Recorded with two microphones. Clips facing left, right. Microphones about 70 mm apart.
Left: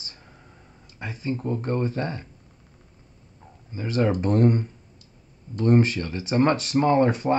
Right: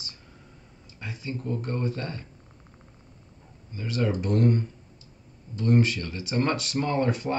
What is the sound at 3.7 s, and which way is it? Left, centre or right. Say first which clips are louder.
Speech: left 4 dB; left.